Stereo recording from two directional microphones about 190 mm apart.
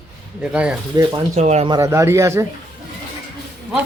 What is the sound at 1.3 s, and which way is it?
Speech, 35° right (ahead or behind).